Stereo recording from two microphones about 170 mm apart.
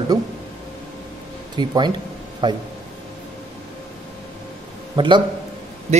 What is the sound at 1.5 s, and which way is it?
A man's voice, 25° right (ahead or behind).